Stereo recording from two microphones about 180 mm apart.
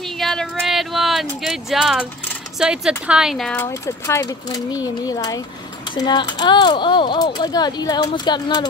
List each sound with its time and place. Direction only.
0.0 s a sound: centre (ahead or behind)
2.6 s speech: 5° right (ahead or behind)
3.6 s speech: 15° left (ahead or behind)